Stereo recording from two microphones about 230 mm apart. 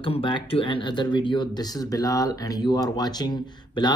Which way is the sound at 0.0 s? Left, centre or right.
Left.